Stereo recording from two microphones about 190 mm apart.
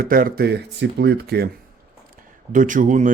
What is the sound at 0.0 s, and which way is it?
Speech, 50° right (ahead or behind).